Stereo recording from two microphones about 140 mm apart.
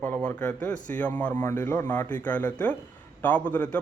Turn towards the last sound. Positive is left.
turn(degrees=10)  # may be behind; listen again after turning